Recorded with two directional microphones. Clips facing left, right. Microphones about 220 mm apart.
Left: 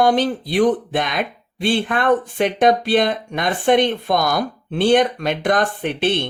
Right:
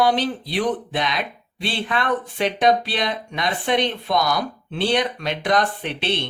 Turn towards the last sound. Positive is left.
turn(degrees=50)  # may be behind; listen again after turning